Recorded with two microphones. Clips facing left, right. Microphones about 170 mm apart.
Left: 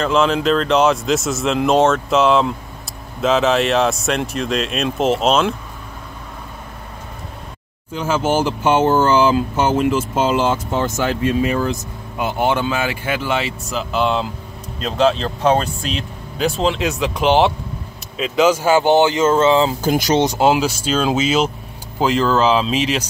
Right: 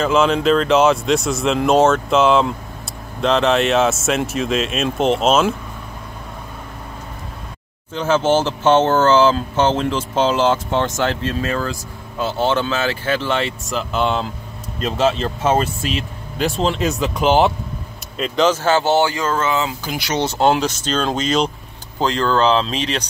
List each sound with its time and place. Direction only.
0.0 s speech: centre (ahead or behind)
7.9 s speech: 10° left (ahead or behind); by 19.7 s 30° left (ahead or behind)
19.8 s speech: 45° left (ahead or behind)
20.3 s speech: 5° left (ahead or behind)